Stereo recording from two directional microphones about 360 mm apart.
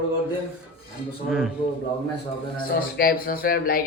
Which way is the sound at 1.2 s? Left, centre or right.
Centre.